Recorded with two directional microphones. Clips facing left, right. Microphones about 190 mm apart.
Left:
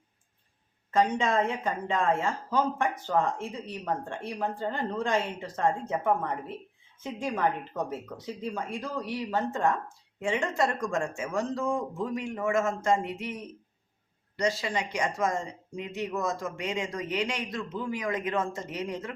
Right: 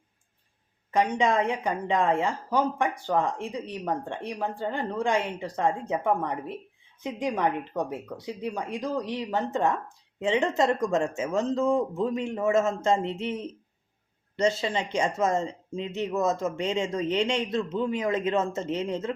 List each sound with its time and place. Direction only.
0.9 s a woman's voice: 15° right (ahead or behind)